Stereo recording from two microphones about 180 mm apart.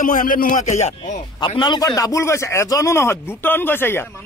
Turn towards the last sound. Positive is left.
turn(degrees=10)  # may be behind; listen again after turning